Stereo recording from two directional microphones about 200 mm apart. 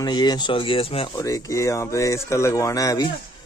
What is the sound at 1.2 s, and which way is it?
Speech, 15° left (ahead or behind).